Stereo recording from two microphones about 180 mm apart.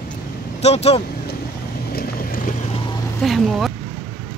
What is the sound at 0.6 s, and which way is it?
Speech, 35° left (ahead or behind).